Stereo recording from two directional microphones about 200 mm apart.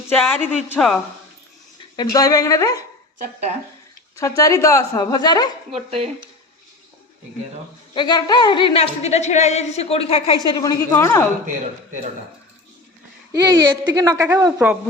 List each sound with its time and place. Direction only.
0.2 s speech: 10° left (ahead or behind)
2.0 s a woman's voice: 20° left (ahead or behind)
4.2 s a woman's voice: 15° left (ahead or behind)
5.7 s speech: 30° right (ahead or behind)
7.9 s a woman's voice: 20° left (ahead or behind)
13.3 s speech: 20° right (ahead or behind)